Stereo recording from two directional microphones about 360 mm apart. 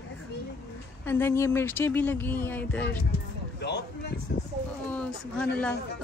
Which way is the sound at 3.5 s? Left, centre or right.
Left.